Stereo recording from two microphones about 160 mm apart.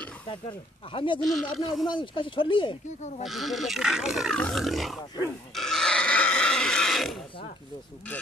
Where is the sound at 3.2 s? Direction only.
Centre (ahead or behind).